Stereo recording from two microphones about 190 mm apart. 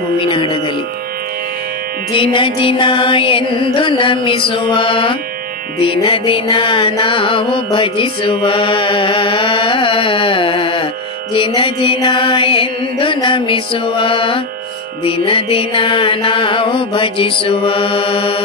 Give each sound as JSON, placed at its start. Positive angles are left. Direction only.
{"t": 0.2, "sound": "music", "side_deg": 25}
{"t": 2.1, "sound": "music", "side_deg": 25}